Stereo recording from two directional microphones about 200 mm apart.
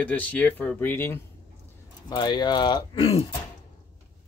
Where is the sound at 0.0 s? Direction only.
10° left (ahead or behind); by 3.3 s 25° left (ahead or behind).